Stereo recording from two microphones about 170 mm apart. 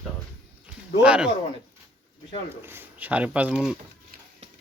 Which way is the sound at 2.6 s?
15° right (ahead or behind).